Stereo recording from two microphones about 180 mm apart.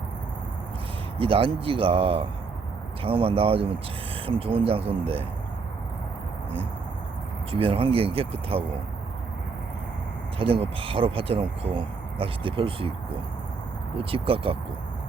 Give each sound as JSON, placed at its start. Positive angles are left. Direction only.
{"t": 1.2, "sound": "speech", "side_deg": -30}
{"t": 7.5, "sound": "speech", "side_deg": -30}
{"t": 10.3, "sound": "speech", "side_deg": -30}
{"t": 13.9, "sound": "speech", "side_deg": -30}